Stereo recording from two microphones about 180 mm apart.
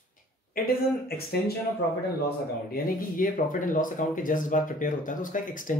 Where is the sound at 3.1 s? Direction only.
50° left (ahead or behind).